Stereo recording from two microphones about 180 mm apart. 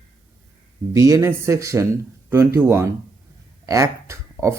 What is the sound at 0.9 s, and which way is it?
A man's voice, 20° right (ahead or behind).